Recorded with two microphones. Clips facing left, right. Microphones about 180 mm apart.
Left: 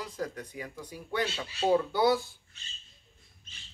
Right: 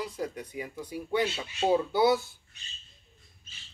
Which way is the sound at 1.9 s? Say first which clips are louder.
Right 2 dB; 5° right (ahead or behind).